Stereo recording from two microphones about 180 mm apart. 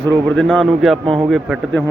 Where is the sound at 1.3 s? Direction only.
Centre (ahead or behind).